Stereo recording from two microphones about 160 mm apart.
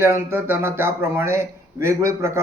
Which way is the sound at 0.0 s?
15° right (ahead or behind).